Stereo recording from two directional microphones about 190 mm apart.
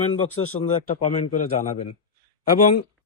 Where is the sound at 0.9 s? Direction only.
45° left (ahead or behind).